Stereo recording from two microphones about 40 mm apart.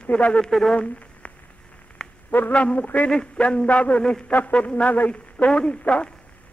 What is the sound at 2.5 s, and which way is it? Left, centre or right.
A man's voice, left.